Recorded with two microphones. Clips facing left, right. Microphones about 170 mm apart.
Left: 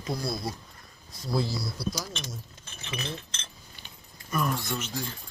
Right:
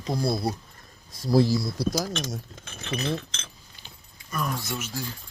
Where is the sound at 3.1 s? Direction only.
80° right.